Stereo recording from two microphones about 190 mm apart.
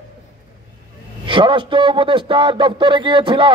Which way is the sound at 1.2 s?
25° right (ahead or behind).